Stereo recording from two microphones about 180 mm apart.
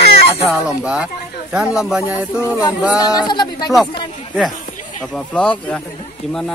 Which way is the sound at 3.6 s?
Centre (ahead or behind).